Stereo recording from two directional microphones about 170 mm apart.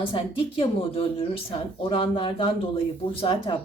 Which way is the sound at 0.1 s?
30° left (ahead or behind).